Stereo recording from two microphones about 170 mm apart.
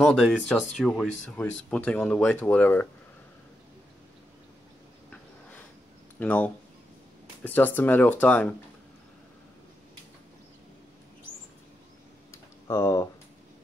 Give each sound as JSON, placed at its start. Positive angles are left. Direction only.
{"t": 0.0, "sound": "speech", "side_deg": 0}
{"t": 6.1, "sound": "speech", "side_deg": 10}
{"t": 12.6, "sound": "speech", "side_deg": 20}